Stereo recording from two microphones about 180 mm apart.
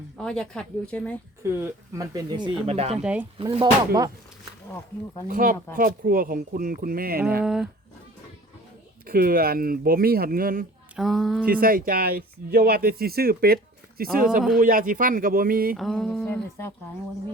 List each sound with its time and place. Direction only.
0.2 s speech: 5° left (ahead or behind)
1.4 s speech: 15° right (ahead or behind); by 3.0 s 35° right (ahead or behind)
3.0 s speech: 5° right (ahead or behind)
3.3 s speech: 30° right (ahead or behind)
5.3 s speech: 50° right (ahead or behind)
7.4 s speech: centre (ahead or behind)
9.0 s speech: 55° right (ahead or behind)
10.9 s speech: centre (ahead or behind)
11.6 s speech: 55° right (ahead or behind)
15.7 s speech: centre (ahead or behind)